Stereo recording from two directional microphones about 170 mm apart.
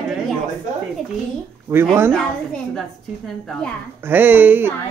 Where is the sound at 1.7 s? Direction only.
10° right (ahead or behind).